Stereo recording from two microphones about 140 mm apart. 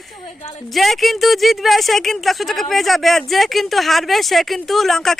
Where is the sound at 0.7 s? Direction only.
Centre (ahead or behind).